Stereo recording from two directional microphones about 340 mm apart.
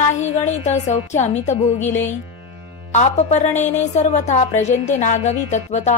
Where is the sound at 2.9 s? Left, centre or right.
Centre.